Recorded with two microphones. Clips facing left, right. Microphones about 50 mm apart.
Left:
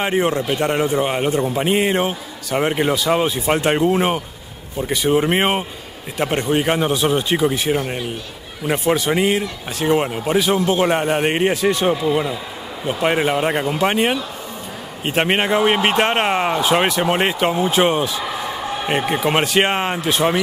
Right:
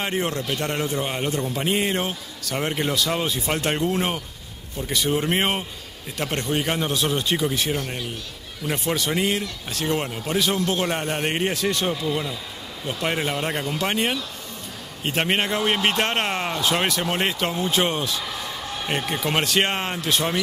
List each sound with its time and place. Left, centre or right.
0.0 s speech: centre